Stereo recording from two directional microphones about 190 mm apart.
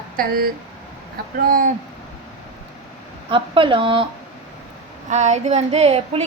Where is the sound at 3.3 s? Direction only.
25° right (ahead or behind).